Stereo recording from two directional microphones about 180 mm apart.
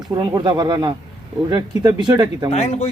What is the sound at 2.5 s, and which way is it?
Speech, 35° left (ahead or behind).